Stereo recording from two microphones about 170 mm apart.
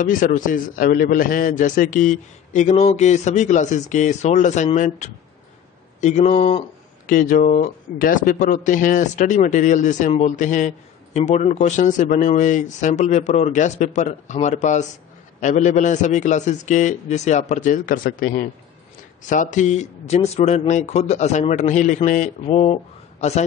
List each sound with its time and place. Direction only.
0.0 s a man's voice: 50° left (ahead or behind)
7.1 s a man's voice: 50° left (ahead or behind); by 22.8 s 35° left (ahead or behind)